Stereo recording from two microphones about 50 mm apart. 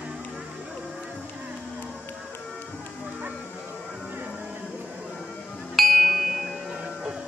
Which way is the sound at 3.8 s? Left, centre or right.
Centre.